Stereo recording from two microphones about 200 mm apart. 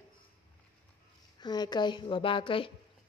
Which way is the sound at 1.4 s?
20° left (ahead or behind).